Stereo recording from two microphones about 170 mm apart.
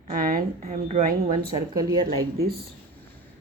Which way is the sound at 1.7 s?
20° right (ahead or behind).